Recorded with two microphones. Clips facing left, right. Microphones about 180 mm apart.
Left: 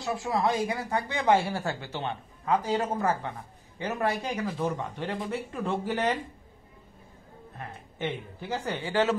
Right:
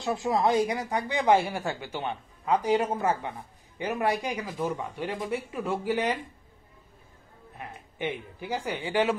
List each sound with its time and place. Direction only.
0.0 s speech: 20° right (ahead or behind)
7.5 s speech: 15° right (ahead or behind)